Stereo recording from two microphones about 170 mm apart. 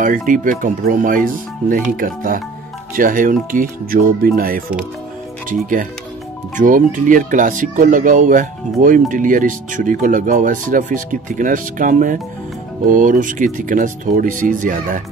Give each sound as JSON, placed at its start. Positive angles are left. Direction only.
{"t": 0.3, "sound": "speech", "side_deg": -50}
{"t": 6.5, "sound": "speech", "side_deg": -50}